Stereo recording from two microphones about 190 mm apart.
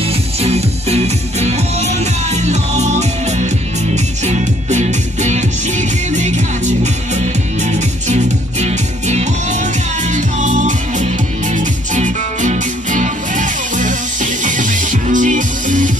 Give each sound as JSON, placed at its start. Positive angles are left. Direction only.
{"t": 0.4, "sound": "music", "side_deg": -35}